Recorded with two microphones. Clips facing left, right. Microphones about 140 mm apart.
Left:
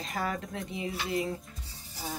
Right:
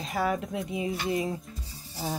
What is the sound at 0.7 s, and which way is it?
Speech, 20° right (ahead or behind).